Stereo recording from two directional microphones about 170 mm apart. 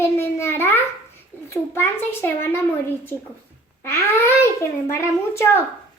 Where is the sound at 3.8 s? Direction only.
15° left (ahead or behind).